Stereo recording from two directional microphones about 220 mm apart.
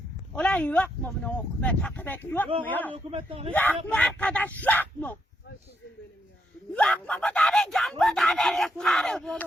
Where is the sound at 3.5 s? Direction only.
5° left (ahead or behind).